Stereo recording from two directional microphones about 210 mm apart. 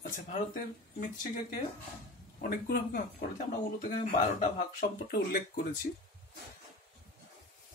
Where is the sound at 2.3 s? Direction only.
45° left (ahead or behind).